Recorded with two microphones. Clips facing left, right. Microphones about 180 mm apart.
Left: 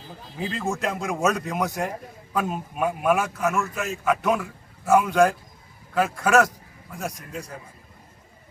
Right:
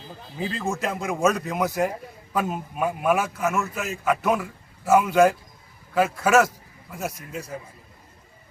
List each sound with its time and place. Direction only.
0.3 s a man's voice: centre (ahead or behind)